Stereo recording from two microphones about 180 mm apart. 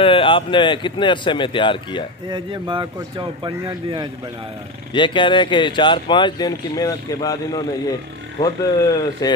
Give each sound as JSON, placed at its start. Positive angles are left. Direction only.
{"t": 0.0, "sound": "speech", "side_deg": 30}
{"t": 2.2, "sound": "speech", "side_deg": -25}
{"t": 4.9, "sound": "speech", "side_deg": 25}